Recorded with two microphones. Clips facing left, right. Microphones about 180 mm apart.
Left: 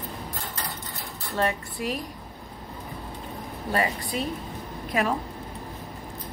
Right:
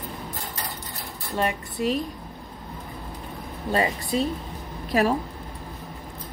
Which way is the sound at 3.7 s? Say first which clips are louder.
Right 3 dB; 25° right (ahead or behind).